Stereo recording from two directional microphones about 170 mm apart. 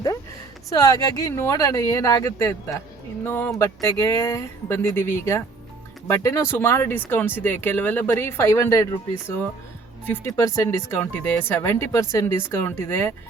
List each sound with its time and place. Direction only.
0.7 s speech: 20° left (ahead or behind)